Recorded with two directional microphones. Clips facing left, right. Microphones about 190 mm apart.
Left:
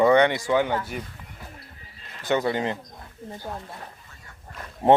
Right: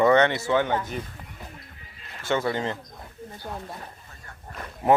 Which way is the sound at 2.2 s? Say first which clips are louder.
Left 2 dB; 15° left (ahead or behind).